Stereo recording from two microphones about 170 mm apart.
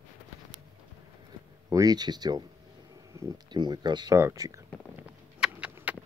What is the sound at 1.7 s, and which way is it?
Speech, 20° right (ahead or behind).